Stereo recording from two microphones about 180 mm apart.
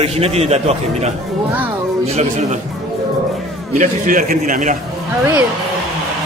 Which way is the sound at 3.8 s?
45° right (ahead or behind).